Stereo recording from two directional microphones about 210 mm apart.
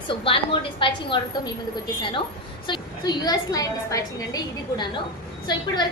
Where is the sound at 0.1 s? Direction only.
25° left (ahead or behind).